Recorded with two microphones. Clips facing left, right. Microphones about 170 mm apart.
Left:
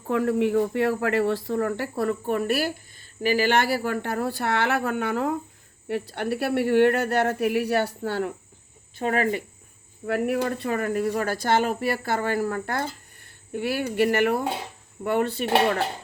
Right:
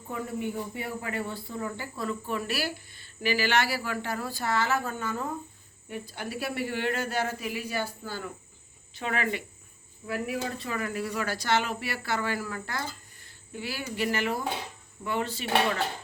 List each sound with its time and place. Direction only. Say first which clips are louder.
0.1 s speech: left 11 dB; 90° left; by 8.3 s 70° left (ahead or behind)
9.0 s speech: left 7 dB; 45° left (ahead or behind)
10.1 s speech: left 8 dB; 60° left (ahead or behind)